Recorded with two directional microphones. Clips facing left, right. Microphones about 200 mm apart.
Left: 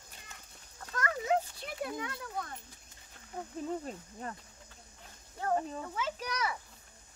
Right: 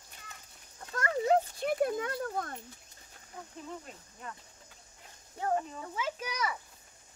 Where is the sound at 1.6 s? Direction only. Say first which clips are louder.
Right 8 dB; 50° right (ahead or behind).